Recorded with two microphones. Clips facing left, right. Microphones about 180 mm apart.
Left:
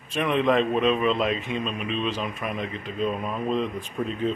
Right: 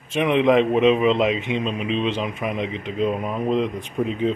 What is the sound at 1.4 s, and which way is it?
Speech, 90° right.